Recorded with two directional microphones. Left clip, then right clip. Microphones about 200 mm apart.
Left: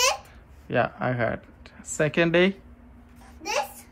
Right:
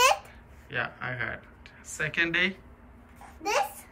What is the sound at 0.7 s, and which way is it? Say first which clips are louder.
Speech: left 7 dB; 10° left (ahead or behind).